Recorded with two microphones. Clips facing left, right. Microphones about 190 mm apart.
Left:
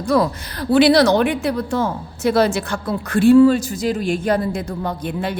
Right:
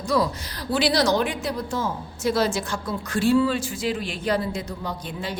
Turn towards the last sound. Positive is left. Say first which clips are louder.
# left 7 dB
turn(degrees=60)  # may be behind; listen again after turning